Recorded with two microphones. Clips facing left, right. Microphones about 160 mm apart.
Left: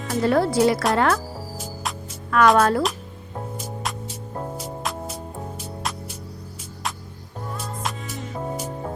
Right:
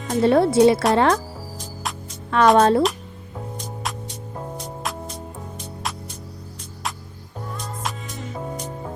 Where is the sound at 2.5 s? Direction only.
25° right (ahead or behind).